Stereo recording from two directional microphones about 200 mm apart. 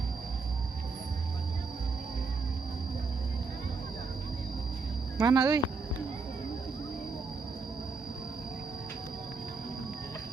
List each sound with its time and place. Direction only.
5.1 s speech: 15° right (ahead or behind)